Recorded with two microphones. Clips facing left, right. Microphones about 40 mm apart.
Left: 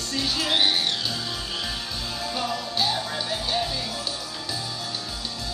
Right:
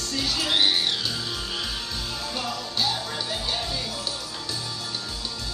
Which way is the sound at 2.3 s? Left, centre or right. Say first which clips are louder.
Left 3 dB; centre.